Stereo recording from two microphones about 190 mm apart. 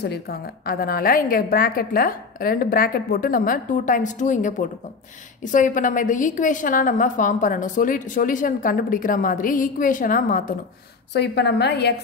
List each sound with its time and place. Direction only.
0.0 s a woman's voice: 60° left (ahead or behind)
11.1 s a woman's voice: 60° left (ahead or behind)